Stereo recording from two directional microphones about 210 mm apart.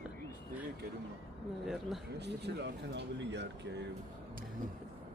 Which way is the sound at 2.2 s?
55° right (ahead or behind).